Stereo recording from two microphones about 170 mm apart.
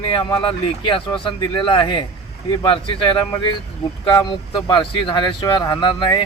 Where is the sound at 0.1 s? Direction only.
30° left (ahead or behind).